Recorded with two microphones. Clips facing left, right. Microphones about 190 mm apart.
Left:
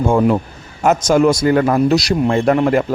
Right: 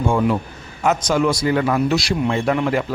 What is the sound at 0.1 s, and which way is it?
A man's voice, 40° left (ahead or behind).